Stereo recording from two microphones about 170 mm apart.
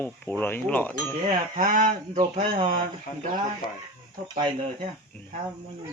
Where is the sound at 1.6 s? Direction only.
50° right (ahead or behind).